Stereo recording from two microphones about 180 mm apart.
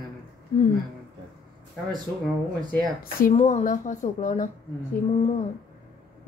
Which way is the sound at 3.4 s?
40° left (ahead or behind).